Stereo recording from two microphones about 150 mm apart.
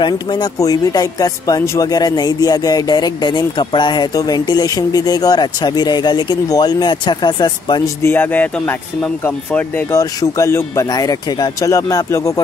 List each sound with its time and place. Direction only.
0.0 s speech: 25° left (ahead or behind)
8.0 s speech: 15° left (ahead or behind)